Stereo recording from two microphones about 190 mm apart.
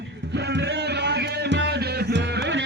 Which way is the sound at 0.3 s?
65° right (ahead or behind).